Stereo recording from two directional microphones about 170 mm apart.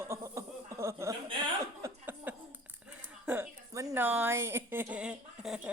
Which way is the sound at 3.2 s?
15° right (ahead or behind).